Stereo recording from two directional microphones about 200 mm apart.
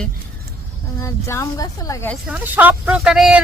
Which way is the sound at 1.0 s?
15° left (ahead or behind).